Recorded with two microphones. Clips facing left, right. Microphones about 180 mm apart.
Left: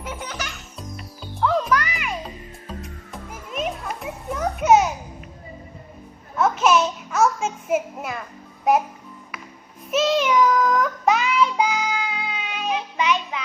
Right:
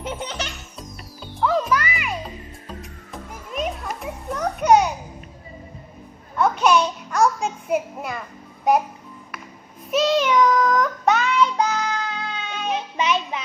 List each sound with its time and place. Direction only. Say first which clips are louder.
0.0 s music: right 3 dB; 30° right (ahead or behind)
0.8 s music: left 1 dB; centre (ahead or behind)
6.3 s a sound: even; 5° left (ahead or behind)
9.9 s child singing: right 1 dB; centre (ahead or behind)
12.6 s music: even; 25° right (ahead or behind)